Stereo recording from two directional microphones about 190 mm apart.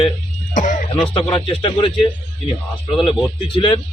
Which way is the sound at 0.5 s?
40° left (ahead or behind).